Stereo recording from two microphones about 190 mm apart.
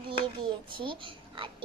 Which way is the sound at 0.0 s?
25° right (ahead or behind).